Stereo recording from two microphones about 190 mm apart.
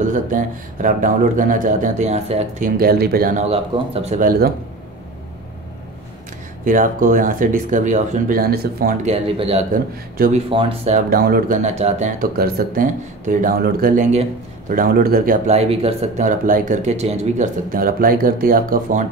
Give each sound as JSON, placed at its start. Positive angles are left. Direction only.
{"t": 0.0, "sound": "a man's voice", "side_deg": -45}
{"t": 2.8, "sound": "a man's voice", "side_deg": -55}
{"t": 3.4, "sound": "speech", "side_deg": -30}
{"t": 6.6, "sound": "a man's voice", "side_deg": -45}
{"t": 9.0, "sound": "speech", "side_deg": -30}
{"t": 12.4, "sound": "a man's voice", "side_deg": -50}
{"t": 15.4, "sound": "speech", "side_deg": -35}
{"t": 17.6, "sound": "a man's voice", "side_deg": -50}